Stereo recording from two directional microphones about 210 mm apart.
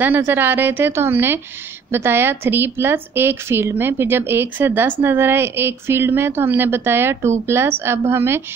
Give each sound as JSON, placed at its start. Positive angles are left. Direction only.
{"t": 0.0, "sound": "a woman's voice", "side_deg": -10}